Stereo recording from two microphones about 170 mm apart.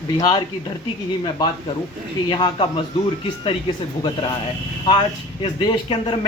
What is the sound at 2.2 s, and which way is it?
Speech, 25° left (ahead or behind).